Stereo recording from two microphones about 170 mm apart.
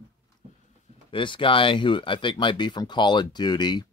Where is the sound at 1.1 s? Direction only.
30° left (ahead or behind).